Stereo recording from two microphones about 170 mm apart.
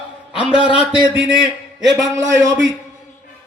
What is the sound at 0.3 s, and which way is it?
A man's voice, 5° right (ahead or behind).